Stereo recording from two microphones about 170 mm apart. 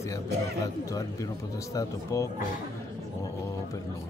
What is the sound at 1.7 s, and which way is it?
Speech, 20° left (ahead or behind).